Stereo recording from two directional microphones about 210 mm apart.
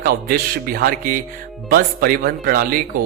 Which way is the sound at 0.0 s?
45° right (ahead or behind).